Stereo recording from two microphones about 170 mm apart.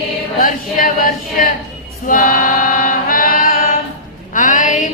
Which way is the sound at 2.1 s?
50° left (ahead or behind).